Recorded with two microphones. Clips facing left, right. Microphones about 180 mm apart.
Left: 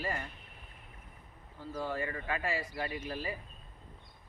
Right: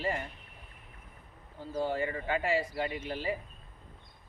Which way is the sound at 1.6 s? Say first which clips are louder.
Right 4 dB; 25° right (ahead or behind).